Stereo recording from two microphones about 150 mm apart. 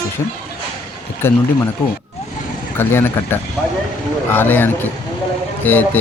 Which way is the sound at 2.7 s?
15° left (ahead or behind).